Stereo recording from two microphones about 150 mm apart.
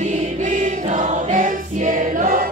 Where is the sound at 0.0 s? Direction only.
60° right (ahead or behind).